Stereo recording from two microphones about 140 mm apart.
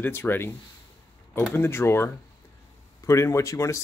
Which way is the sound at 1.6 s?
20° left (ahead or behind).